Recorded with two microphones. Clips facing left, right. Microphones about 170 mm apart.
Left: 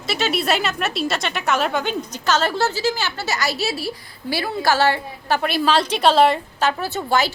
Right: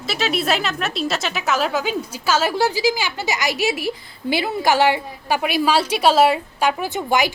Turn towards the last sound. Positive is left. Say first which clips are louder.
# right 1 dB
turn(degrees=-15)  # may be behind; listen again after turning